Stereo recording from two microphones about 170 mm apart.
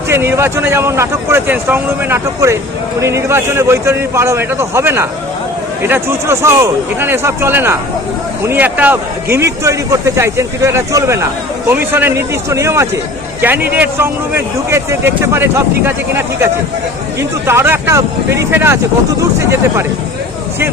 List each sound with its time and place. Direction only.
0.1 s a man's voice: 15° right (ahead or behind)